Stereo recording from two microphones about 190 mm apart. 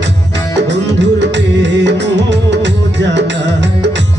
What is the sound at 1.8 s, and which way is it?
Music, 70° right (ahead or behind).